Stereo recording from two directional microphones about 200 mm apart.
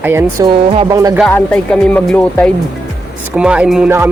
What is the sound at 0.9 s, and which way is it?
Speech, 15° right (ahead or behind).